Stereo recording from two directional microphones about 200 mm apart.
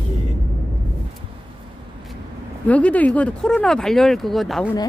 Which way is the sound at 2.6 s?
5° left (ahead or behind).